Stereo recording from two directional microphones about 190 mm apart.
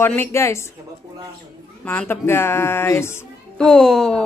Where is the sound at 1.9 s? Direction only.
10° left (ahead or behind).